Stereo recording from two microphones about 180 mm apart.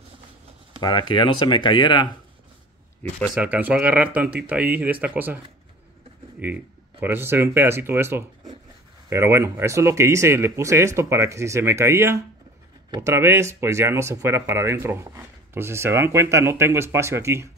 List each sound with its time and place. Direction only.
0.7 s speech: 25° left (ahead or behind)
3.3 s speech: 10° right (ahead or behind)
6.4 s speech: 10° right (ahead or behind)